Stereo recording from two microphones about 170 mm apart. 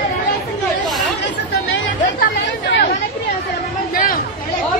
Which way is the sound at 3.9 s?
55° left (ahead or behind).